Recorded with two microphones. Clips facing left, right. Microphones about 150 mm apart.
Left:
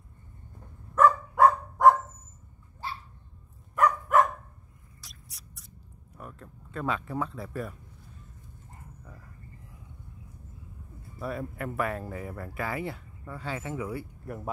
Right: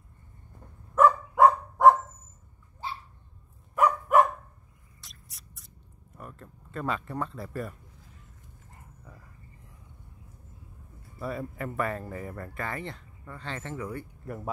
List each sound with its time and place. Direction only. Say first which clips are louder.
1.0 s dog: right 1 dB; 20° right (ahead or behind)
3.7 s dog: right 1 dB; 10° right (ahead or behind)
5.0 s mouse: left 1 dB; centre (ahead or behind)
6.1 s speech: even; centre (ahead or behind)
11.1 s speech: even; centre (ahead or behind)